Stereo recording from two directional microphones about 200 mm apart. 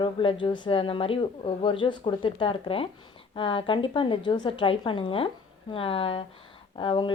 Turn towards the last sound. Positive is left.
turn(degrees=25)  # may be behind; listen again after turning